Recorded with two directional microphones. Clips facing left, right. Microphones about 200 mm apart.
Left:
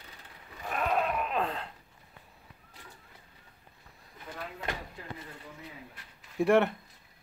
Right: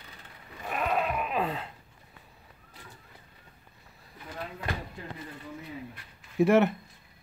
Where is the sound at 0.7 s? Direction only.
5° right (ahead or behind).